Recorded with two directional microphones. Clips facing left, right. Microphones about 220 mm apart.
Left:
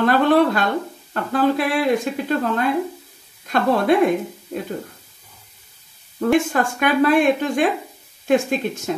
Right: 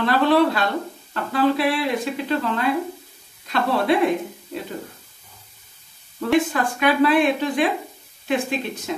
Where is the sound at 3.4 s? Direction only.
50° left (ahead or behind).